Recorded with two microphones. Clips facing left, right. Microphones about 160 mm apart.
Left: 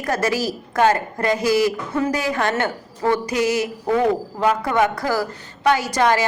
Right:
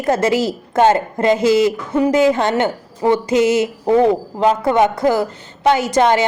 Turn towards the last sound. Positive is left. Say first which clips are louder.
# right 4 dB
turn(degrees=-25)  # may be behind; listen again after turning